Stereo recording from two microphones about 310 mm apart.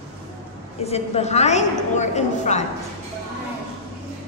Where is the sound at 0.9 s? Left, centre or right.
Centre.